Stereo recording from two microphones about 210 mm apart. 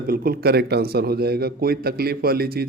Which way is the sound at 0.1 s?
45° right (ahead or behind).